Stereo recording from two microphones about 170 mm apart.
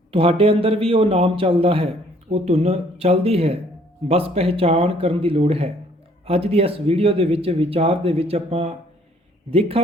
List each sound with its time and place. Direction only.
0.1 s speech: 35° right (ahead or behind)